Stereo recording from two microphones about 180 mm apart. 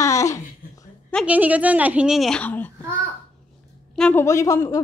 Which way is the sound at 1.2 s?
10° right (ahead or behind).